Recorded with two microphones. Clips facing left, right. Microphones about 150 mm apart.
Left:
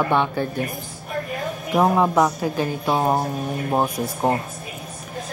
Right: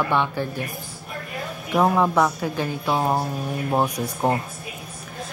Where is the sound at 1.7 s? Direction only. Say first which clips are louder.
Left 1 dB; 15° left (ahead or behind).